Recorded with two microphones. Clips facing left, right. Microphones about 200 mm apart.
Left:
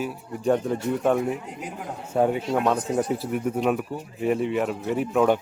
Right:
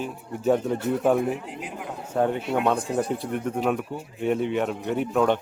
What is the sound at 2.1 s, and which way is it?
Speech, 10° left (ahead or behind).